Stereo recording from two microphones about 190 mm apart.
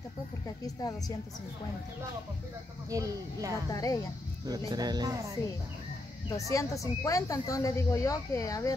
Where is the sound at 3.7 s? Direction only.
20° left (ahead or behind).